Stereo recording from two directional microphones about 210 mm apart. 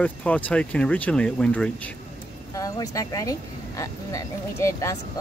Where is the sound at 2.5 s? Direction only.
15° left (ahead or behind).